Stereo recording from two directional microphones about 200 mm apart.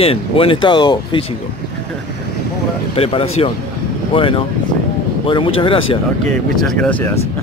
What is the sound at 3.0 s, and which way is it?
Speech, 30° left (ahead or behind).